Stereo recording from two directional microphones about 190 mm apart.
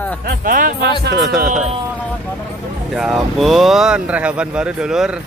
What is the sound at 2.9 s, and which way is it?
Speech, centre (ahead or behind).